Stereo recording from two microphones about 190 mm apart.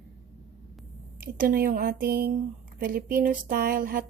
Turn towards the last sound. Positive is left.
turn(degrees=-50)  # may be behind; listen again after turning